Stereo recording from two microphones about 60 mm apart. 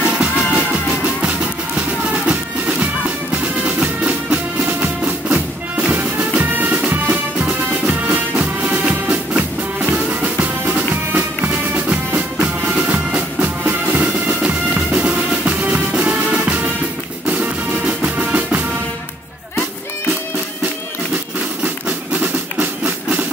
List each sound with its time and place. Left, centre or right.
0.0 s music: centre; by 11.5 s right
11.7 s music: right
14.4 s music: centre
21.6 s train: right